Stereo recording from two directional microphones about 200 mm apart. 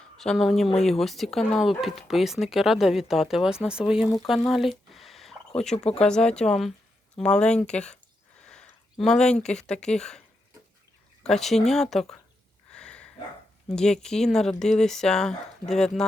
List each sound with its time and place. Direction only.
0.2 s speech: centre (ahead or behind)
4.3 s a sound: centre (ahead or behind)
5.7 s speech: 30° left (ahead or behind)
6.0 s speech: 5° left (ahead or behind)
12.7 s a sound: 5° left (ahead or behind)
13.7 s speech: 5° left (ahead or behind)